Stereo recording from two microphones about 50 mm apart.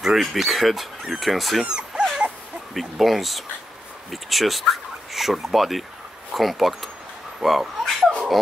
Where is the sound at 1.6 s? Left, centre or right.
Centre.